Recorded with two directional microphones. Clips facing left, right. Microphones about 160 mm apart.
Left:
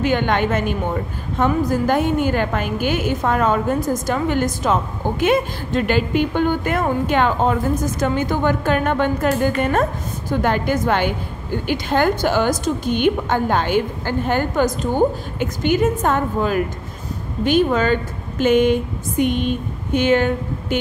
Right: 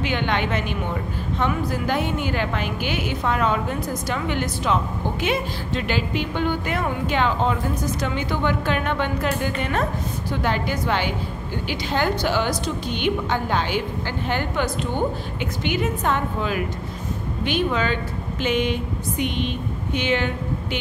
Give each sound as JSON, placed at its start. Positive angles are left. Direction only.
{"t": 0.0, "sound": "a woman's voice", "side_deg": 45}